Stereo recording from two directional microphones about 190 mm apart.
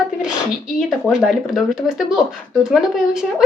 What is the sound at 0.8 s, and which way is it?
Speech, 5° right (ahead or behind).